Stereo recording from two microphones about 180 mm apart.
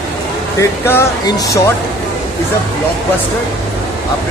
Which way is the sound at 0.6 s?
15° left (ahead or behind).